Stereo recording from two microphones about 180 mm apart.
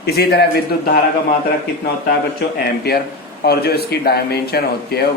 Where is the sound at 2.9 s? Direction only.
60° left (ahead or behind).